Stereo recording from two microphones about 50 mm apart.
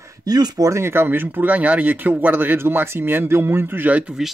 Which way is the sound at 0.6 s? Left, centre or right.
Right.